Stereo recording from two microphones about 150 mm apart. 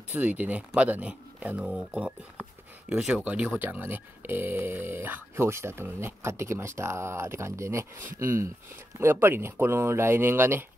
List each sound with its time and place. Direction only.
0.1 s speech: 10° right (ahead or behind)
3.3 s speech: 10° right (ahead or behind)